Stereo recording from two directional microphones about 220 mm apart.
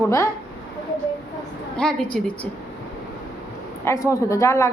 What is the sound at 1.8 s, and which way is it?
Speech, 5° left (ahead or behind).